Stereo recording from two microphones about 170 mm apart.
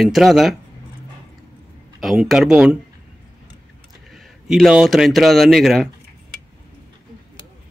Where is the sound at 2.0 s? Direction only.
Centre (ahead or behind).